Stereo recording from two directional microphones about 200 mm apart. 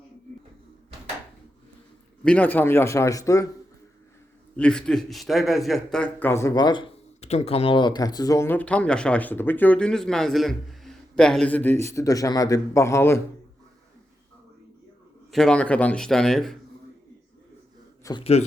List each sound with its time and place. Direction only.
2.2 s a man's voice: 5° left (ahead or behind)
4.5 s a man's voice: 5° left (ahead or behind)
15.3 s a man's voice: 5° left (ahead or behind)
18.0 s a man's voice: 25° left (ahead or behind)